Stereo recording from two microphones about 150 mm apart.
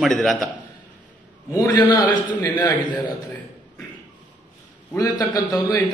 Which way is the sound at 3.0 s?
10° left (ahead or behind).